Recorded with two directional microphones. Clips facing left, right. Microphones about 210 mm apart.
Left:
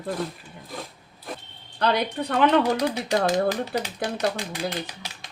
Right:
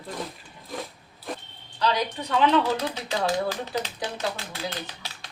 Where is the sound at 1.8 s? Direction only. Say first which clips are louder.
Left 2 dB; 55° left (ahead or behind).